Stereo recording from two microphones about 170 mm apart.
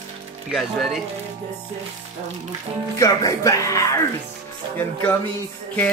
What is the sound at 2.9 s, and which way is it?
Speech, 20° left (ahead or behind).